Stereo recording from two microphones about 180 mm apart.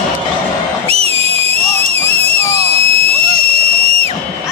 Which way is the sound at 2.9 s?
35° right (ahead or behind).